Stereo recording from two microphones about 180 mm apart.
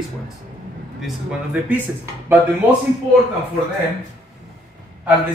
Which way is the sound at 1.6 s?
10° right (ahead or behind).